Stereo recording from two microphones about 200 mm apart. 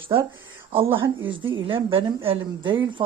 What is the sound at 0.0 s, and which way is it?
A woman's voice, 25° right (ahead or behind).